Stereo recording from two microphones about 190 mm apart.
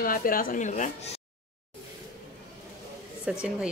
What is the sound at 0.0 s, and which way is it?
A woman's voice, 50° left (ahead or behind).